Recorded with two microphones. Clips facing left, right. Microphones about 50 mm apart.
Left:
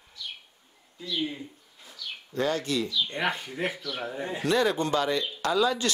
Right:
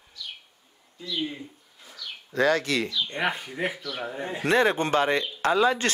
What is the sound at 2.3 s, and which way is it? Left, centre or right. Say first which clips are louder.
Speech: right 4 dB; right.